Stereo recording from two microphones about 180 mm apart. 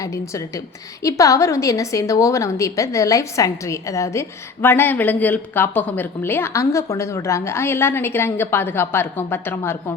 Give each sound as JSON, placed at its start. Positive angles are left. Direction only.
{"t": 0.0, "sound": "a woman's voice", "side_deg": 20}